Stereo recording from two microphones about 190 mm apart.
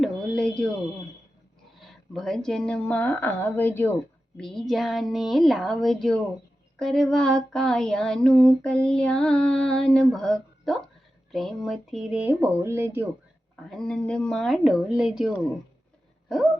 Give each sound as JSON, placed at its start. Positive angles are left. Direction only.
{"t": 0.0, "sound": "a sound", "side_deg": 5}
{"t": 1.8, "sound": "speech", "side_deg": 0}
{"t": 4.5, "sound": "female singing", "side_deg": 0}
{"t": 11.3, "sound": "speech", "side_deg": 0}
{"t": 13.7, "sound": "female singing", "side_deg": 5}